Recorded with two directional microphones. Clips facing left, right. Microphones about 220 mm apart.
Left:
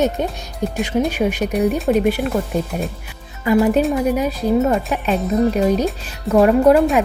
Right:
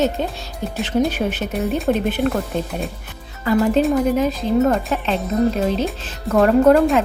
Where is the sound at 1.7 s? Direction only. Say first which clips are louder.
Left 2 dB; centre (ahead or behind).